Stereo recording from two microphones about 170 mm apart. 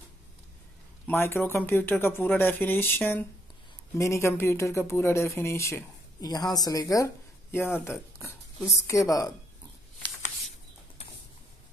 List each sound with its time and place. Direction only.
1.0 s a woman's voice: 10° left (ahead or behind)